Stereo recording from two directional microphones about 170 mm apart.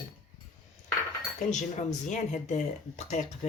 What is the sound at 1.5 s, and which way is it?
Speech, 45° left (ahead or behind).